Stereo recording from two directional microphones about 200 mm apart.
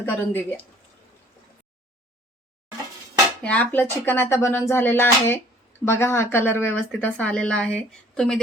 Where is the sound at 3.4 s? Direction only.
10° left (ahead or behind).